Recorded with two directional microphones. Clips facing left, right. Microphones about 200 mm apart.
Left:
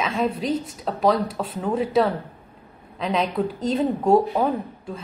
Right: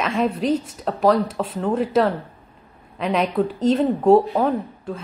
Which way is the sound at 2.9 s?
10° right (ahead or behind).